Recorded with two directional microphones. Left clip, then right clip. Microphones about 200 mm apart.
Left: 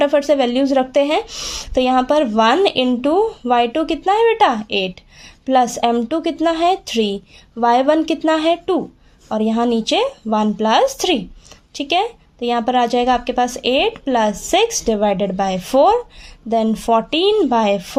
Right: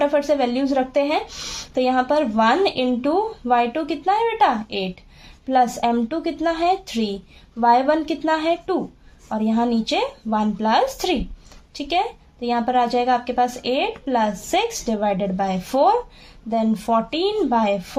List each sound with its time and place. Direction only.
0.0 s a woman's voice: 45° left (ahead or behind)